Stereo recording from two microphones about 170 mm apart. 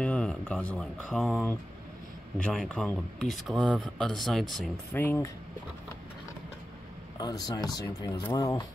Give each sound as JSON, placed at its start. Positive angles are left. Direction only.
{"t": 0.0, "sound": "speech", "side_deg": 5}
{"t": 2.3, "sound": "speech", "side_deg": 5}
{"t": 4.9, "sound": "speech", "side_deg": 10}
{"t": 7.2, "sound": "speech", "side_deg": 25}